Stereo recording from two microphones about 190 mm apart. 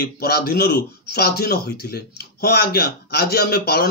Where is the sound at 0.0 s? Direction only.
55° left (ahead or behind).